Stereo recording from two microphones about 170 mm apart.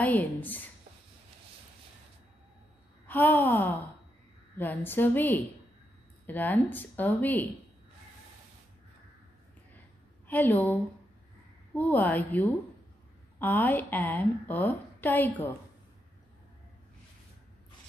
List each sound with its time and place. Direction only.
0.0 s a woman's voice: 10° left (ahead or behind)
3.1 s a woman's voice: 10° left (ahead or behind)
10.2 s a woman's voice: 10° left (ahead or behind)